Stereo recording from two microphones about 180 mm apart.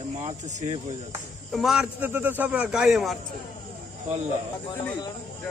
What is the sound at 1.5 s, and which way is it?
A man's voice, centre (ahead or behind).